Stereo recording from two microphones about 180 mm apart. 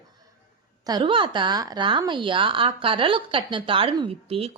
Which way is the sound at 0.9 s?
25° right (ahead or behind).